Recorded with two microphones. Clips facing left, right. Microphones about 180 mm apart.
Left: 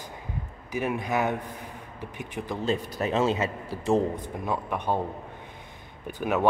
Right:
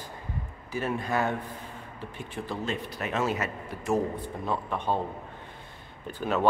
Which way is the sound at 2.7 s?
40° left (ahead or behind).